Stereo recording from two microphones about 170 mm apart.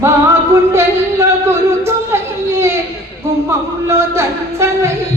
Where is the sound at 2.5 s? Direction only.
15° right (ahead or behind).